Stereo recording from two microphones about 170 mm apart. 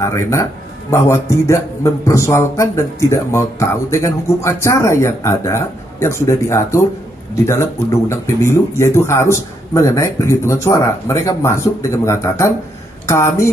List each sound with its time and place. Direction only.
0.0 s a man's voice: 15° left (ahead or behind)